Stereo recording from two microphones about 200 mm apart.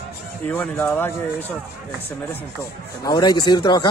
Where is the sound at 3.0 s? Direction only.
20° left (ahead or behind).